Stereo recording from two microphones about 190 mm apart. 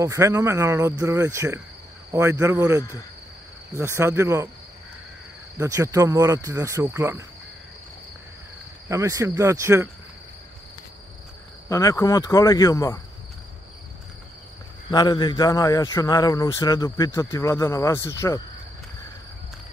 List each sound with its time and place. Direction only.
0.0 s speech: 15° right (ahead or behind)
5.6 s speech: 15° right (ahead or behind)
8.8 s speech: 15° right (ahead or behind)
11.7 s a man's voice: 15° left (ahead or behind)
14.9 s a man's voice: 20° left (ahead or behind)